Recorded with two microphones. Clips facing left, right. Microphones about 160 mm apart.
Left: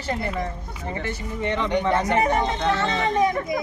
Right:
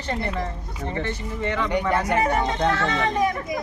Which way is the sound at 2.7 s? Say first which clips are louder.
Left 1 dB; 25° left (ahead or behind).